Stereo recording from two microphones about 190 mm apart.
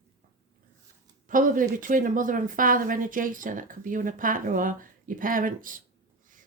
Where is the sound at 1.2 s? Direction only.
45° right (ahead or behind).